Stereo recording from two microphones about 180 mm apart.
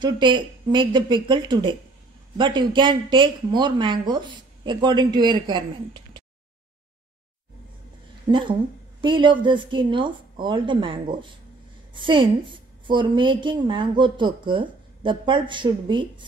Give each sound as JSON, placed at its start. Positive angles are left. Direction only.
{"t": 0.0, "sound": "a woman's voice", "side_deg": -25}
{"t": 8.3, "sound": "a woman's voice", "side_deg": -25}